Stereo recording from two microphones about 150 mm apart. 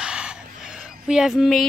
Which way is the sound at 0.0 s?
5° right (ahead or behind).